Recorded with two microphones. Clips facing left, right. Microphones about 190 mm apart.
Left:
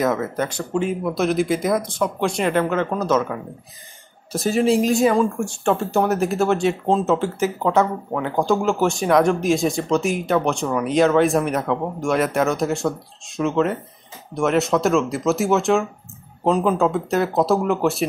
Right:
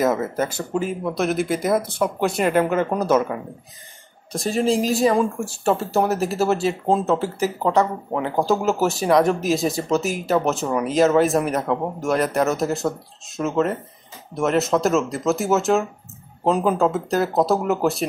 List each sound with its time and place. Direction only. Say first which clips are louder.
0.0 s speech: right 1 dB; 5° right (ahead or behind)
4.3 s speech: left 2 dB; centre (ahead or behind)